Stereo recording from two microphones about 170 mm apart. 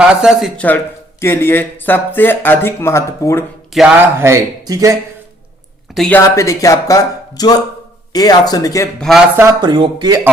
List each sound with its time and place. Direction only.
0.0 s speech: 5° right (ahead or behind); by 3.4 s 15° left (ahead or behind)
3.7 s speech: centre (ahead or behind)
4.2 s speech: 20° right (ahead or behind)
5.9 s speech: 5° left (ahead or behind)
6.2 s speech: 20° left (ahead or behind)
9.0 s speech: centre (ahead or behind)
9.3 s speech: 15° right (ahead or behind)